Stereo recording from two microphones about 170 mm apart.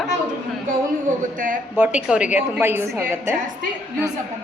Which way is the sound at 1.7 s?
10° right (ahead or behind).